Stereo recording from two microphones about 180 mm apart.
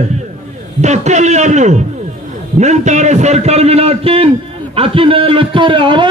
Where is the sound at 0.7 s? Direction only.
40° right (ahead or behind).